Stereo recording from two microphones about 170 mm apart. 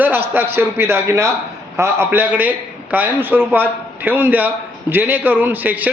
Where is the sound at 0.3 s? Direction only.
15° right (ahead or behind).